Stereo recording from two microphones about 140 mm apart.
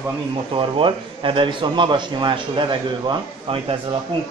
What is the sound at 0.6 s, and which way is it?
A man's voice, 40° right (ahead or behind).